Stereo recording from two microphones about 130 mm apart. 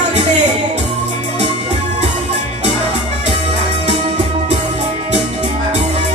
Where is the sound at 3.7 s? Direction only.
55° right (ahead or behind).